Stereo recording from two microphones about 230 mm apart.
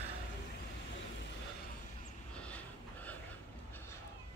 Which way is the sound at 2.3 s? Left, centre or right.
Centre.